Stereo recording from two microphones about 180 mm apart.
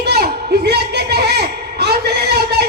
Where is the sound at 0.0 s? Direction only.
65° right (ahead or behind).